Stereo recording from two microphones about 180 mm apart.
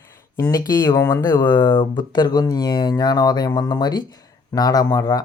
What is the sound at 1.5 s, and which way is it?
Speech, 25° left (ahead or behind).